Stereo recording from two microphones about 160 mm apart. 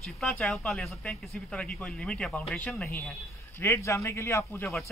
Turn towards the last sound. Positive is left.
turn(degrees=15)  # may be behind; listen again after turning